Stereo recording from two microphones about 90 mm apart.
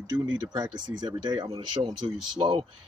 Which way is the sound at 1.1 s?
55° right (ahead or behind).